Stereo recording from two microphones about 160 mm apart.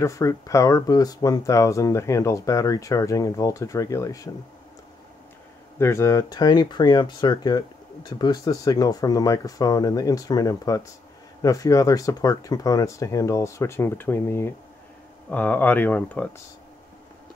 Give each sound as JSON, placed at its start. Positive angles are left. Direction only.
{"t": 0.0, "sound": "speech", "side_deg": 20}
{"t": 5.8, "sound": "speech", "side_deg": 15}